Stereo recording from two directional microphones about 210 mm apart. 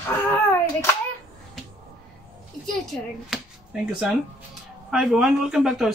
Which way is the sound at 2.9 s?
5° left (ahead or behind).